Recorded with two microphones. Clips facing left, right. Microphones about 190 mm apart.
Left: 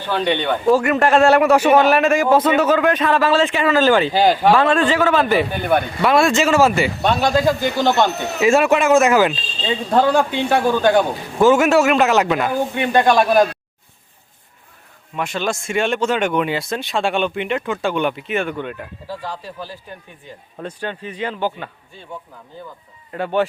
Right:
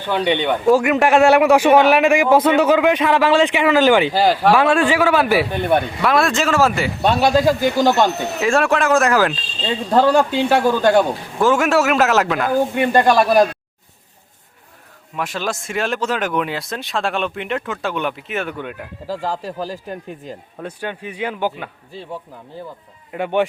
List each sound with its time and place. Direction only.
0.0 s speech: 15° right (ahead or behind)
4.1 s speech: 5° right (ahead or behind)
7.2 s speech: 10° right (ahead or behind)
8.4 s speech: 5° left (ahead or behind)
11.3 s speech: centre (ahead or behind)
15.1 s speech: centre (ahead or behind)
19.0 s speech: 40° right (ahead or behind)
19.7 s speech: 90° right
20.6 s speech: 10° right (ahead or behind)
23.1 s speech: 15° right (ahead or behind)